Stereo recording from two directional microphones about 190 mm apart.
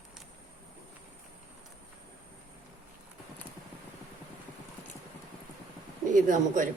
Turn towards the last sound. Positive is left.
turn(degrees=-40)  # may be behind; listen again after turning